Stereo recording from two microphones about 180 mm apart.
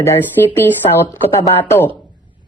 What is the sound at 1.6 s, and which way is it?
Speech, 15° left (ahead or behind).